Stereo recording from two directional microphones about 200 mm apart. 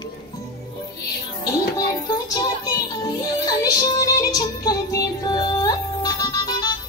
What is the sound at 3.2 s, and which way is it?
Music, 20° left (ahead or behind).